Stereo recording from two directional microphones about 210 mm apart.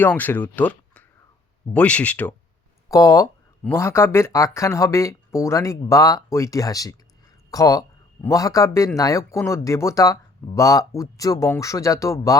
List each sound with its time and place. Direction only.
0.0 s speech: 10° left (ahead or behind)